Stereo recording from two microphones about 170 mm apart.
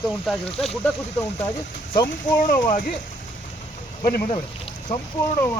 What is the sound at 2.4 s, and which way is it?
Speech, 50° left (ahead or behind).